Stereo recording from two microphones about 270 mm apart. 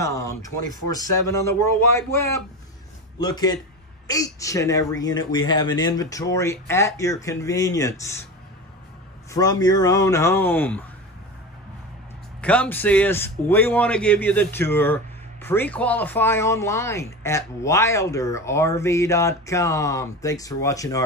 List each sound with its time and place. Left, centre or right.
0.0 s speech: centre
9.3 s speech: centre
12.4 s speech: centre